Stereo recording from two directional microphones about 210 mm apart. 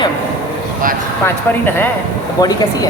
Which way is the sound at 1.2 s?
10° left (ahead or behind).